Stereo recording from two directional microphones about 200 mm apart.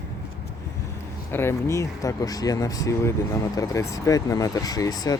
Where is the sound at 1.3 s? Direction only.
10° left (ahead or behind).